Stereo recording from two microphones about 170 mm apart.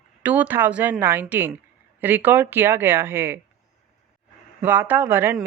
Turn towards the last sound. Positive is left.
turn(degrees=-10)  # may be behind; listen again after turning